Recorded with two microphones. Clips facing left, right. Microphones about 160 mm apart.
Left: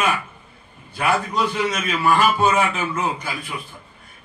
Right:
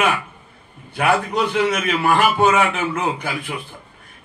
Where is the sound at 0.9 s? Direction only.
60° right (ahead or behind).